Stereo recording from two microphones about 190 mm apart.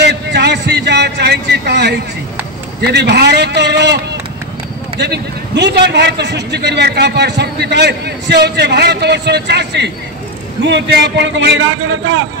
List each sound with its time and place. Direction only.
0.0 s a sound: 60° right (ahead or behind)
2.8 s a man's voice: 60° right (ahead or behind)
5.0 s a man's voice: 65° right (ahead or behind); by 12.2 s 90° right